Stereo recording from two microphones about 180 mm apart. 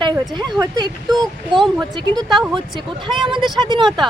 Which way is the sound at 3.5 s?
25° right (ahead or behind).